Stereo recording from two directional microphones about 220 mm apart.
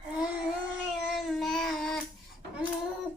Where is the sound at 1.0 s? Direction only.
Centre (ahead or behind).